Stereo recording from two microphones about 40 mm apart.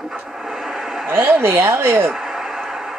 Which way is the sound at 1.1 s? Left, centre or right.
Right.